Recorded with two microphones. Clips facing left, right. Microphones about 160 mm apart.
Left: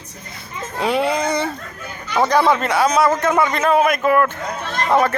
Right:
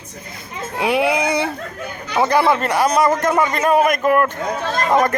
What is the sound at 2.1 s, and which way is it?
A man's voice, 10° right (ahead or behind).